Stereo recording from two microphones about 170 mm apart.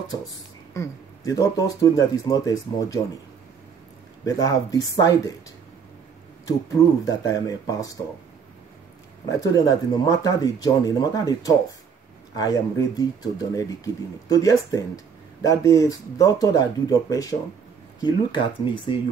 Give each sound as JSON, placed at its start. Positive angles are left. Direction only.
{"t": 0.7, "sound": "speech", "side_deg": 20}
{"t": 4.2, "sound": "speech", "side_deg": 20}
{"t": 6.4, "sound": "speech", "side_deg": 20}
{"t": 9.3, "sound": "speech", "side_deg": 20}